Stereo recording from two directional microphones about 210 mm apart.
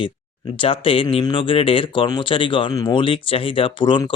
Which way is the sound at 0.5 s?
25° left (ahead or behind).